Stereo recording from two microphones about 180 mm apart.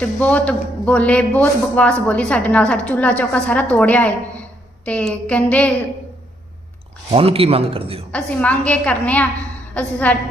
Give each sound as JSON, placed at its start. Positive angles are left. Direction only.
{"t": 0.0, "sound": "a man's voice", "side_deg": 5}
{"t": 7.1, "sound": "a man's voice", "side_deg": -35}
{"t": 8.1, "sound": "a man's voice", "side_deg": 10}